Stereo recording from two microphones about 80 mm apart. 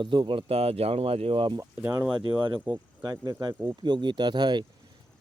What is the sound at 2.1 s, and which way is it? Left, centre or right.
Speech, right.